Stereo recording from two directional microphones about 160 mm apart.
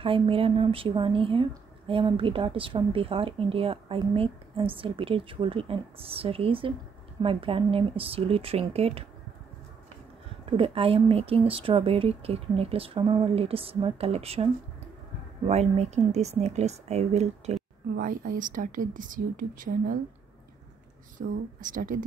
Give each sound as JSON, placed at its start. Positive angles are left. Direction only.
{"t": 0.0, "sound": "a woman's voice", "side_deg": -35}
{"t": 10.4, "sound": "a woman's voice", "side_deg": -35}
{"t": 17.9, "sound": "speech", "side_deg": -60}
{"t": 21.2, "sound": "speech", "side_deg": -55}